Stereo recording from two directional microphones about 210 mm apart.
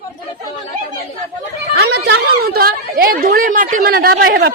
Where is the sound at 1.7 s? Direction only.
55° right (ahead or behind).